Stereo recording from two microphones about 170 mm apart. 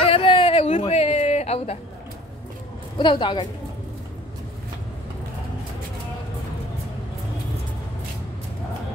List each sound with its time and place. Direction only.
0.0 s chicken: 35° left (ahead or behind)
3.0 s a woman's voice: 30° left (ahead or behind)